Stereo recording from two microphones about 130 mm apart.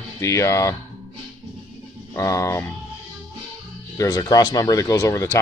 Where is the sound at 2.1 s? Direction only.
25° left (ahead or behind).